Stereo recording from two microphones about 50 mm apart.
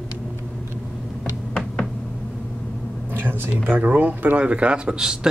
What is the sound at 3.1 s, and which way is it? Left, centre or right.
Speech, right.